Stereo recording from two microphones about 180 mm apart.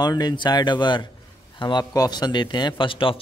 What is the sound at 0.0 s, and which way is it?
Speech, 25° left (ahead or behind).